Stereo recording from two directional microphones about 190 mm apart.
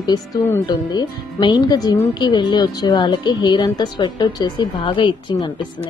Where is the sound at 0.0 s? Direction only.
20° left (ahead or behind).